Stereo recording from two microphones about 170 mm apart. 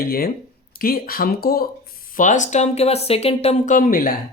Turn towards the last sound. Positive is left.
turn(degrees=60)  # may be behind; listen again after turning